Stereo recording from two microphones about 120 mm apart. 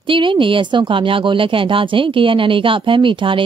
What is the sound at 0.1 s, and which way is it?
Speech, 45° right (ahead or behind).